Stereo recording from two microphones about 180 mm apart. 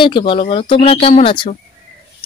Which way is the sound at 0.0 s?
25° left (ahead or behind).